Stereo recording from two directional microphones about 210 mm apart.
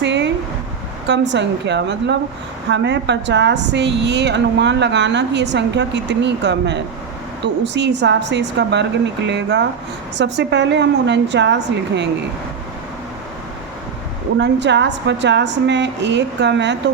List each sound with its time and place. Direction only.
0.0 s a sound: 55° right (ahead or behind)
1.0 s a woman's voice: 55° right (ahead or behind)
14.3 s a woman's voice: 55° right (ahead or behind)